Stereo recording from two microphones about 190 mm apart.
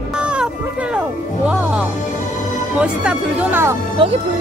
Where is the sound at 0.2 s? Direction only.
5° right (ahead or behind).